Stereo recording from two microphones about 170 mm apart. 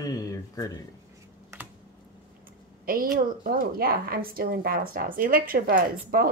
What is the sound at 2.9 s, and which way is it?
A woman's voice, 60° right (ahead or behind).